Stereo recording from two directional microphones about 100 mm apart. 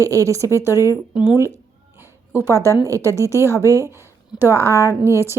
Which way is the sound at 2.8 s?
30° right (ahead or behind).